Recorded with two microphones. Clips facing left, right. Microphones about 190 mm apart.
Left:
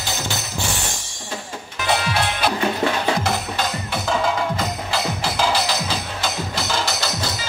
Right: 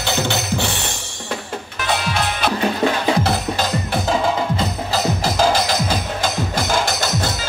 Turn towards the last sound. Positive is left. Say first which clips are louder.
# right 4 dB
turn(degrees=-50)  # may be behind; listen again after turning